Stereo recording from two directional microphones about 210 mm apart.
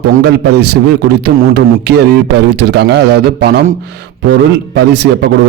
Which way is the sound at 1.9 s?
50° right (ahead or behind).